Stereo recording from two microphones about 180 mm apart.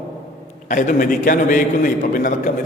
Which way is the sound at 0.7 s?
45° left (ahead or behind).